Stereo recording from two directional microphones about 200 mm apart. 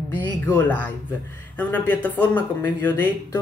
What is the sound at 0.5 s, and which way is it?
Speech, 10° left (ahead or behind).